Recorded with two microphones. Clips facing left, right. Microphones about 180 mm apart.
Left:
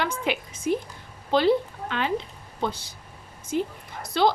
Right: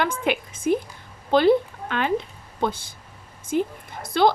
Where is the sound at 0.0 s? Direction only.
50° right (ahead or behind).